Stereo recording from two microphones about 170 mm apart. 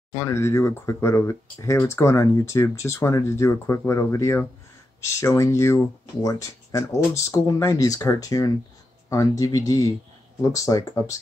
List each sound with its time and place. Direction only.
0.1 s speech: 15° left (ahead or behind)